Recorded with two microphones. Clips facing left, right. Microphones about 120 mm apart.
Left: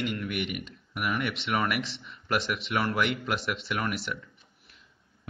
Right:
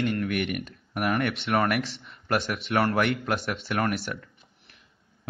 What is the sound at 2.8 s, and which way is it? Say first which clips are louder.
A man's voice: right 4 dB; 45° right (ahead or behind).